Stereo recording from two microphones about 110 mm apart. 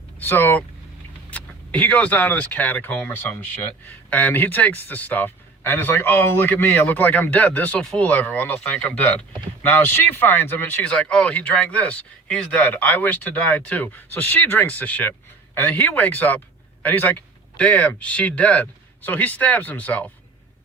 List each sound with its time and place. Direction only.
0.2 s a man's voice: 20° left (ahead or behind)